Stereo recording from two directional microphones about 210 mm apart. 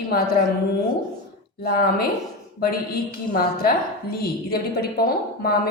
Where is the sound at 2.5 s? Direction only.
45° left (ahead or behind).